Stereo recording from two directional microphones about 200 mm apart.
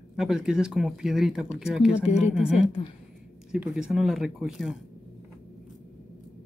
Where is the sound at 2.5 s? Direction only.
25° left (ahead or behind).